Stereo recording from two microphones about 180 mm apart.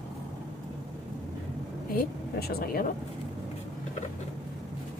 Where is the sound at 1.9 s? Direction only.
55° left (ahead or behind).